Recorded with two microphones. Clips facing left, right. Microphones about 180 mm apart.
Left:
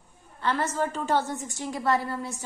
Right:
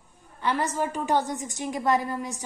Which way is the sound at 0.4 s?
15° right (ahead or behind).